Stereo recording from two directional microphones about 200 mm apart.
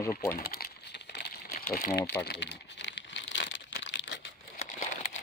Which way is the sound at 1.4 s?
40° left (ahead or behind).